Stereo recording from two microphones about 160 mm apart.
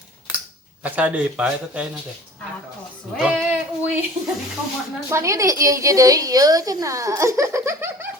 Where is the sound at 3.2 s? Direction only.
Centre (ahead or behind).